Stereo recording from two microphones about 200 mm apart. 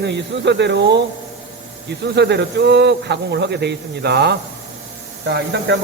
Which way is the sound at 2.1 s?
60° right (ahead or behind).